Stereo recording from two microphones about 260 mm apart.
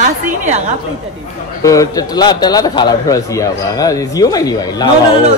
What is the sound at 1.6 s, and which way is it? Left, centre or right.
A man's voice, centre.